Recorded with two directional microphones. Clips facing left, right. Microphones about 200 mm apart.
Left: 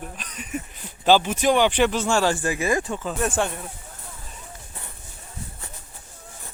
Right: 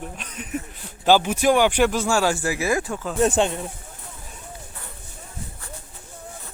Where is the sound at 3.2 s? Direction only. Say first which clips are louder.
Right 7 dB; 20° right (ahead or behind).